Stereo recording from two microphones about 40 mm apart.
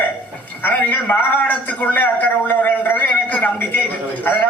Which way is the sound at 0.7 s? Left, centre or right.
Left.